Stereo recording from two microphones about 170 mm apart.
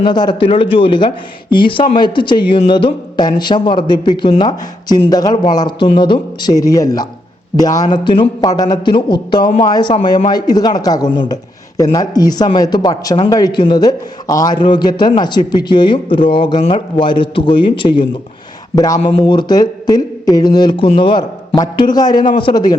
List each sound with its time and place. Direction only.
0.0 s speech: 25° left (ahead or behind)